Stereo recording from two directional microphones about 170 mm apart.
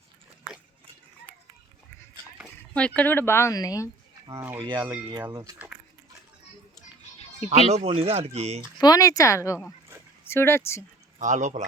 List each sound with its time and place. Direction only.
2.4 s speech: 5° left (ahead or behind)
4.3 s speech: 15° right (ahead or behind)
5.3 s speech: 20° right (ahead or behind)
7.9 s speech: 35° right (ahead or behind)
8.8 s speech: 20° left (ahead or behind)
11.2 s speech: 45° right (ahead or behind)